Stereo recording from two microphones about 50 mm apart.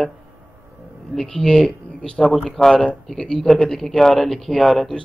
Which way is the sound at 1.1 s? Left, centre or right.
Centre.